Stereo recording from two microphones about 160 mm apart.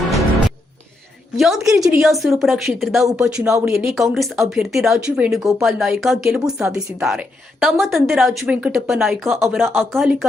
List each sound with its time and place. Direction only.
0.1 s music: centre (ahead or behind)
1.4 s a woman's voice: centre (ahead or behind)
1.6 s a woman's voice: 20° right (ahead or behind)
1.9 s a woman's voice: centre (ahead or behind)